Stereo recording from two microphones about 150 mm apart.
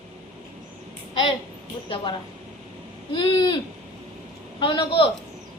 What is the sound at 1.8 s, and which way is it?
Speech, 35° left (ahead or behind).